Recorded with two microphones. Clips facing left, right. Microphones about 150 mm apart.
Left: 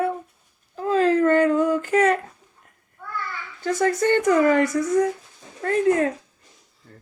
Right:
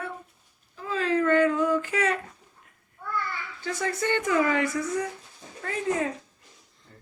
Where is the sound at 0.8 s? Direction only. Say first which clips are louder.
Left 7 dB; 45° left (ahead or behind).